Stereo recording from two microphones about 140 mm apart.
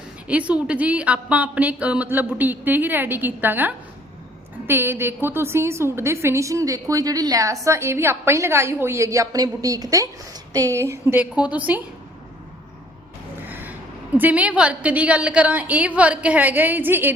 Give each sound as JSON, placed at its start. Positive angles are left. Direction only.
{"t": 0.3, "sound": "a woman's voice", "side_deg": -10}
{"t": 13.5, "sound": "a sound", "side_deg": -15}
{"t": 14.2, "sound": "speech", "side_deg": -10}